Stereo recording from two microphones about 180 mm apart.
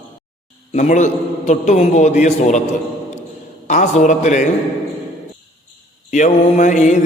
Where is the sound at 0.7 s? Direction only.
40° left (ahead or behind).